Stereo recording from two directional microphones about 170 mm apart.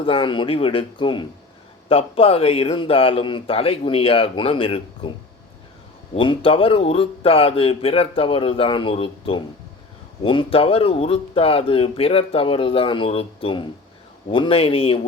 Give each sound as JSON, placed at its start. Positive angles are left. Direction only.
{"t": 0.0, "sound": "speech", "side_deg": 30}
{"t": 6.1, "sound": "speech", "side_deg": 30}